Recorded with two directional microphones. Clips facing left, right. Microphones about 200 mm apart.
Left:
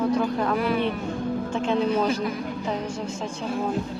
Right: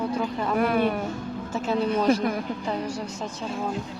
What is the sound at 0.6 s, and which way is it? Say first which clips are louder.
Speech: right 6 dB; 50° right (ahead or behind).